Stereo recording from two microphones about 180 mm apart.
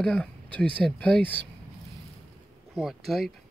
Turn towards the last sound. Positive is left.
turn(degrees=0)  # may be behind; listen again after turning